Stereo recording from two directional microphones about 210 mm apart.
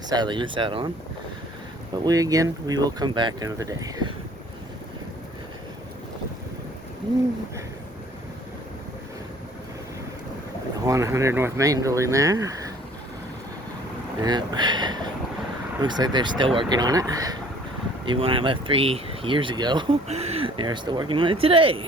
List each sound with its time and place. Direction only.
0.1 s speech: 20° right (ahead or behind)
2.0 s speech: 15° right (ahead or behind)
10.8 s speech: 15° right (ahead or behind)
14.2 s speech: 20° right (ahead or behind)